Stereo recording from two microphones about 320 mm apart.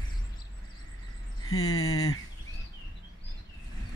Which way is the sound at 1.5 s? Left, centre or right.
Left.